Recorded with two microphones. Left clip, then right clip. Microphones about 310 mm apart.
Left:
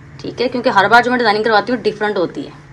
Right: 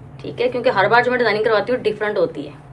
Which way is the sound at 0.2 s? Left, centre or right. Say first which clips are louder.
Left 2 dB; centre.